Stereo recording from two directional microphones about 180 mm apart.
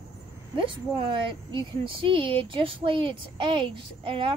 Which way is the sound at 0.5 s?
30° right (ahead or behind).